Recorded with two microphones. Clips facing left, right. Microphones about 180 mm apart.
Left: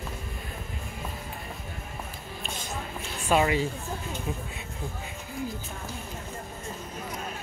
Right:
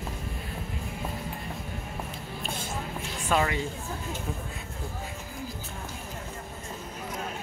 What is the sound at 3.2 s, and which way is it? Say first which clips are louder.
Speech: left 3 dB; 20° left (ahead or behind).